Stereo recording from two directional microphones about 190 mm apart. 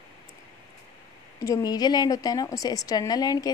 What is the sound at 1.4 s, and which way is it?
A woman's voice, 20° left (ahead or behind).